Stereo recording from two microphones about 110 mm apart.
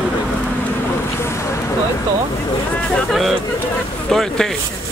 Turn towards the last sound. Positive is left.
turn(degrees=5)  # may be behind; listen again after turning